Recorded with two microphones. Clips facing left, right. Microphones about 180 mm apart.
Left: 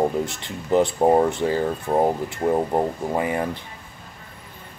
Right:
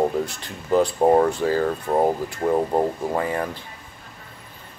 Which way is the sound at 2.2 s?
20° left (ahead or behind).